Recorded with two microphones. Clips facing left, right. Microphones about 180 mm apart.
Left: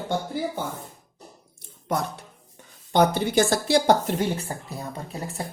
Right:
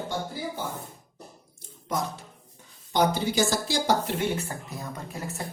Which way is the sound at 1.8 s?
65° left (ahead or behind).